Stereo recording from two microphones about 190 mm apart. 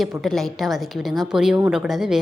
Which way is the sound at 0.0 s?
Centre (ahead or behind).